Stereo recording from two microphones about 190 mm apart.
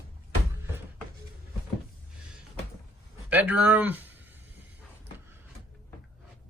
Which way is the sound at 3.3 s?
10° right (ahead or behind).